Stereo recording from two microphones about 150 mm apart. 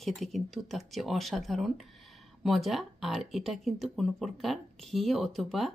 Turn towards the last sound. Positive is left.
turn(degrees=0)  # may be behind; listen again after turning